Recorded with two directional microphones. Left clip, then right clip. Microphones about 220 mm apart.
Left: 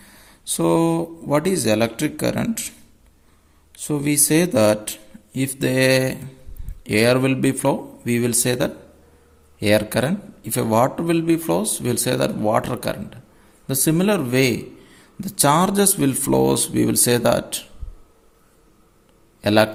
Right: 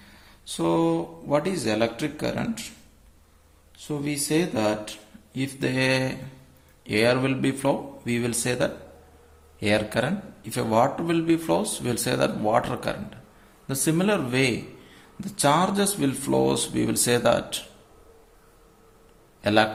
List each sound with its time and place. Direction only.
0.0 s speech: 45° left (ahead or behind)
3.8 s a man's voice: 50° left (ahead or behind)
19.4 s a man's voice: 35° left (ahead or behind)